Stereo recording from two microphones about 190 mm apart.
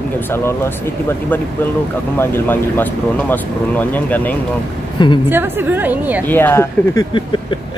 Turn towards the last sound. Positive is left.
turn(degrees=25)  # may be behind; listen again after turning